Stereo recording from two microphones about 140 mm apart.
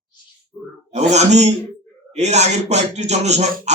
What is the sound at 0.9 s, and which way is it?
Speech, 50° right (ahead or behind).